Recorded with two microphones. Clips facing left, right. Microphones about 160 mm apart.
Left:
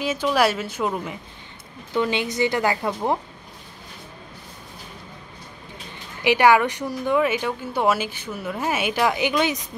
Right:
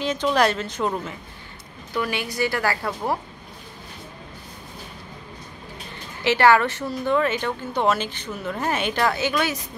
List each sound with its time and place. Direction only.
0.0 s a woman's voice: 5° left (ahead or behind)
2.0 s a woman's voice: 20° left (ahead or behind)
6.2 s a woman's voice: 15° left (ahead or behind)